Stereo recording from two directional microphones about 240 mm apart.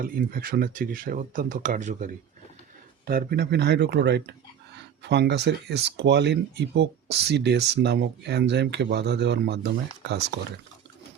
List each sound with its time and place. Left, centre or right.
0.0 s speech: right
3.1 s speech: right